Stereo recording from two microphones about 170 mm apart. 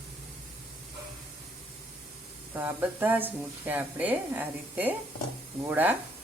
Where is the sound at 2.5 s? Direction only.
10° right (ahead or behind).